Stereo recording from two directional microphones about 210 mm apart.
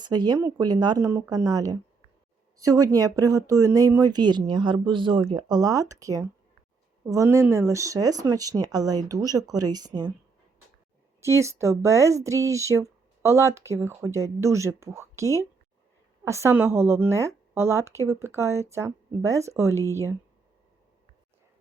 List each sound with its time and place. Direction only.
0.0 s speech: 20° right (ahead or behind)
11.2 s speech: 15° right (ahead or behind)